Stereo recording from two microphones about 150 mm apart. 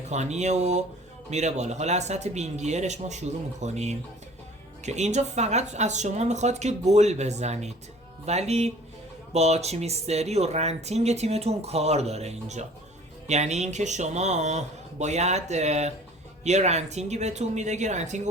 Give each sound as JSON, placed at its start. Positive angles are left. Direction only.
{"t": 0.1, "sound": "speech", "side_deg": -50}